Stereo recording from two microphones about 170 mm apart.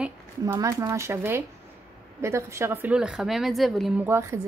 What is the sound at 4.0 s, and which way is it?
Speech, 15° right (ahead or behind).